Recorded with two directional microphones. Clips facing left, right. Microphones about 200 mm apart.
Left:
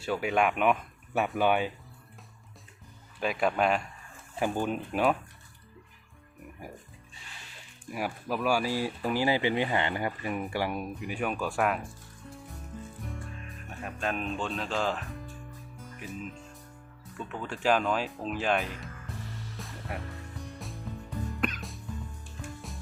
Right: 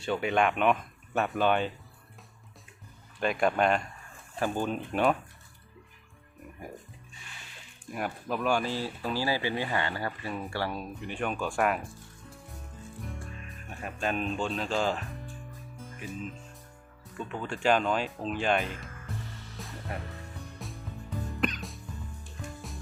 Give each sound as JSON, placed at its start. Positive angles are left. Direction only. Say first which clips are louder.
{"t": 0.0, "sound": "speech", "louder": "even", "side_deg": 5}
{"t": 3.2, "sound": "speech", "louder": "right 1 dB", "side_deg": 5}
{"t": 7.9, "sound": "speech", "louder": "even", "side_deg": 5}
{"t": 13.8, "sound": "speech", "louder": "right 2 dB", "side_deg": 0}
{"t": 19.5, "sound": "music", "louder": "right 1 dB", "side_deg": 0}